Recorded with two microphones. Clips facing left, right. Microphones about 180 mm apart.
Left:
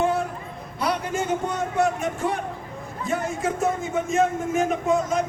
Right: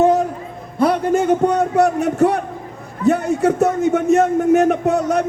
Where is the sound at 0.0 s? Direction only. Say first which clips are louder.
Right 9 dB; 40° right (ahead or behind).